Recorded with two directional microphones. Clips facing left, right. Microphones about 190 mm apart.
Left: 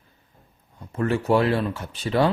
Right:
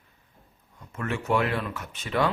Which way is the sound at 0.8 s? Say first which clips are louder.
Left 8 dB; 35° left (ahead or behind).